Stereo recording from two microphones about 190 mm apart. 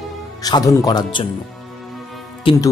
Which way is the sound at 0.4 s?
20° left (ahead or behind).